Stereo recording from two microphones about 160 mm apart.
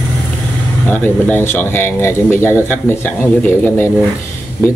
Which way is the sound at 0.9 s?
10° left (ahead or behind).